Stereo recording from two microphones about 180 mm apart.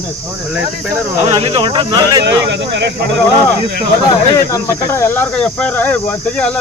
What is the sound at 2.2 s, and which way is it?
Speech, 80° right.